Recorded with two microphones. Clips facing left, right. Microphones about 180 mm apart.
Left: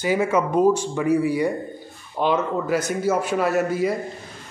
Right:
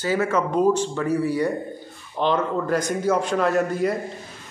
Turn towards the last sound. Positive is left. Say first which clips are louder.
# even
turn(degrees=5)  # may be behind; listen again after turning